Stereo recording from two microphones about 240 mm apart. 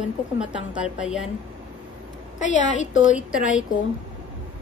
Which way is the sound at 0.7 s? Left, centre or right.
Centre.